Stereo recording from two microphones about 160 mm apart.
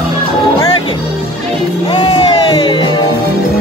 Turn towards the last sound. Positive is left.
turn(degrees=30)  # may be behind; listen again after turning